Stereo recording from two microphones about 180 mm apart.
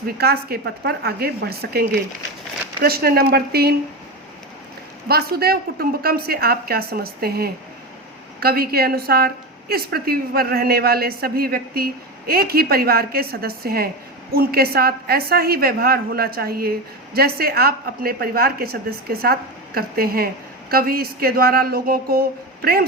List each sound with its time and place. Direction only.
0.2 s a woman's voice: 60° right (ahead or behind)
5.0 s a woman's voice: 60° right (ahead or behind)